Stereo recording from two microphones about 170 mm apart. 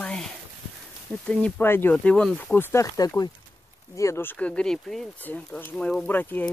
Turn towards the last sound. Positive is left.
turn(degrees=10)  # may be behind; listen again after turning